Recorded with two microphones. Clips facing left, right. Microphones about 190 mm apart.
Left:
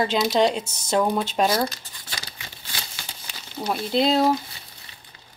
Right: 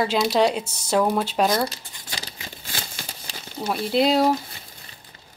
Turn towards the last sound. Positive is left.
turn(degrees=-5)  # may be behind; listen again after turning